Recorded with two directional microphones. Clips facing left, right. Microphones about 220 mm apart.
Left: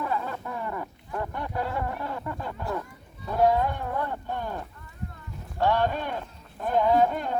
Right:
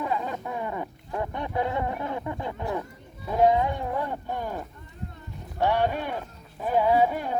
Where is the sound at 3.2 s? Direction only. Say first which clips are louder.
Right 1 dB; 15° right (ahead or behind).